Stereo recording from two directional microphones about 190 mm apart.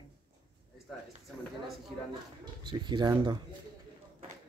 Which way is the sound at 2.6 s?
25° right (ahead or behind).